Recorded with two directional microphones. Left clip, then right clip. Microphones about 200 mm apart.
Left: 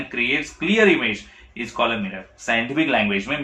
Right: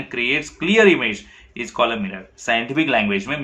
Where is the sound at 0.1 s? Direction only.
25° right (ahead or behind).